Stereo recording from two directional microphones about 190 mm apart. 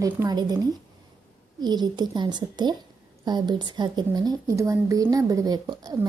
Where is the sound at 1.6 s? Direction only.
20° right (ahead or behind).